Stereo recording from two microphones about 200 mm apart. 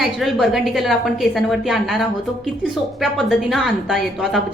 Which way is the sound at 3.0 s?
Centre (ahead or behind).